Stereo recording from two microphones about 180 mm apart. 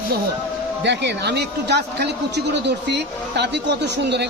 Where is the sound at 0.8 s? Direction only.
70° right (ahead or behind).